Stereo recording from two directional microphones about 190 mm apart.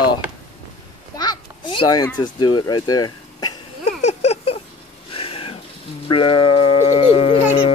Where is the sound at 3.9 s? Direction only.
35° left (ahead or behind).